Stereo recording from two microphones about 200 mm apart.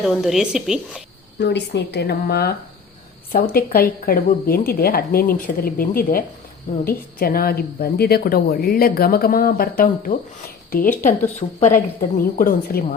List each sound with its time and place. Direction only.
0.0 s a woman's voice: centre (ahead or behind)
1.4 s a woman's voice: 60° left (ahead or behind)